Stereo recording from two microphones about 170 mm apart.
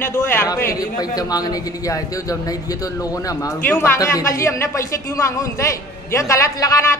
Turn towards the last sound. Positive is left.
turn(degrees=20)  # may be behind; listen again after turning